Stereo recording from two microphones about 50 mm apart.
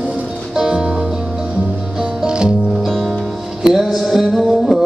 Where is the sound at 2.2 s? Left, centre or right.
Centre.